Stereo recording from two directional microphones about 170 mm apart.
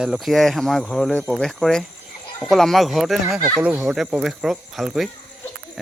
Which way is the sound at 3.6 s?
15° right (ahead or behind).